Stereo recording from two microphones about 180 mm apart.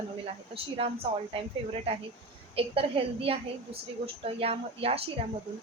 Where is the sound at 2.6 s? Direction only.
30° right (ahead or behind).